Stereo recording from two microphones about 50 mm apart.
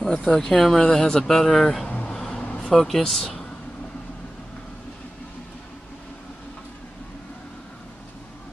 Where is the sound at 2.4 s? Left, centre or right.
Left.